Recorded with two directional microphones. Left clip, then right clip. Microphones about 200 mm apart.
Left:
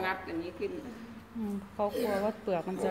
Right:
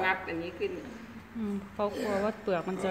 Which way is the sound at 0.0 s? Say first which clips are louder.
Right 4 dB; 20° left (ahead or behind).